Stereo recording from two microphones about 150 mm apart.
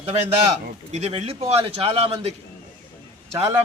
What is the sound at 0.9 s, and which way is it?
Speech, 45° right (ahead or behind).